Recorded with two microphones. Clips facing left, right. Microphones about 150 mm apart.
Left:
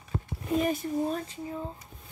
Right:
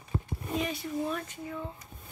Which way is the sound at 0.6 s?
45° left (ahead or behind).